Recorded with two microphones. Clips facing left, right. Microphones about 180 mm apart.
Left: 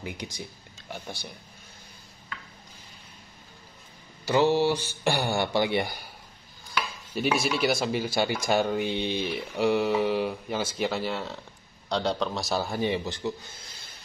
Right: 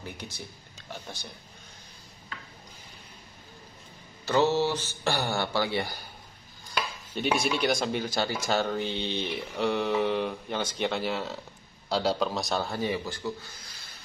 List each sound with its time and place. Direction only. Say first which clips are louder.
0.0 s speech: left 3 dB; 15° left (ahead or behind)
4.3 s speech: left 2 dB; 15° left (ahead or behind)
7.2 s a man's voice: left 1 dB; 5° left (ahead or behind)
12.8 s speech: left 2 dB; 20° left (ahead or behind)